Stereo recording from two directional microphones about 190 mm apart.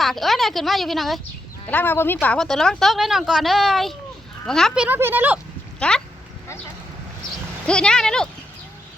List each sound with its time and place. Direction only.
0.0 s speech: centre (ahead or behind)
1.7 s a woman's voice: 10° left (ahead or behind); by 5.4 s 10° right (ahead or behind)
5.8 s a woman's voice: 5° left (ahead or behind)
7.7 s a woman's voice: 5° left (ahead or behind)